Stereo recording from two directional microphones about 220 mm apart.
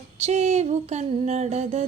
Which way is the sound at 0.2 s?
30° right (ahead or behind).